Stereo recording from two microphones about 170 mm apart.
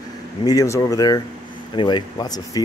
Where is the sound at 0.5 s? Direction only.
20° left (ahead or behind).